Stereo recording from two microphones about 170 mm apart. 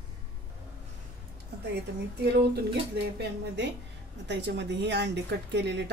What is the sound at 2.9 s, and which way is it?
A woman's voice, 90° right.